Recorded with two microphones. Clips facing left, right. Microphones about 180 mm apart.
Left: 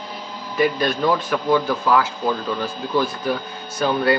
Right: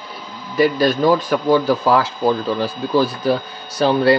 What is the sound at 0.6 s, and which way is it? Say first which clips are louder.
A man's voice: right 4 dB; 35° right (ahead or behind).